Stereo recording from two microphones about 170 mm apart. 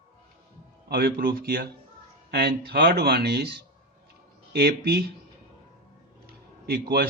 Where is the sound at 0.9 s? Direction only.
60° right (ahead or behind).